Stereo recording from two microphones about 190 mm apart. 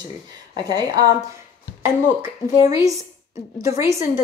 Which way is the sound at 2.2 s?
15° right (ahead or behind).